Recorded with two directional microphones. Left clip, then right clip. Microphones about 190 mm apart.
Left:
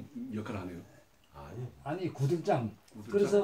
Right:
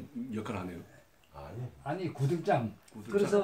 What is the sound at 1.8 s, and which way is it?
Speech, 10° left (ahead or behind).